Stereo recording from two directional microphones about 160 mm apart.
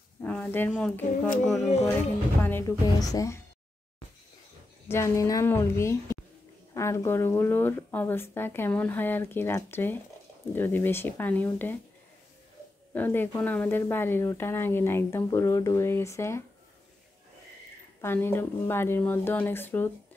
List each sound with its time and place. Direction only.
0.2 s speech: 10° left (ahead or behind)
2.4 s speech: 20° left (ahead or behind)
4.8 s speech: 15° left (ahead or behind)
12.9 s speech: 10° left (ahead or behind)
18.0 s speech: 15° left (ahead or behind)